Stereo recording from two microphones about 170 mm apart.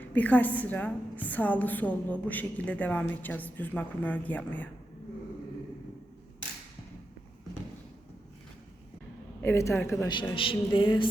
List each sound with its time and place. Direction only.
0.0 s a woman's voice: 10° left (ahead or behind)
9.4 s a woman's voice: 15° left (ahead or behind)
10.0 s speech: 25° left (ahead or behind)